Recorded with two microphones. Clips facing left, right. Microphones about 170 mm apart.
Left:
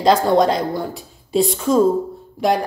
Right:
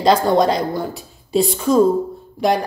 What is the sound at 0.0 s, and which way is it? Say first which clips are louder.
A woman's voice: even; centre (ahead or behind).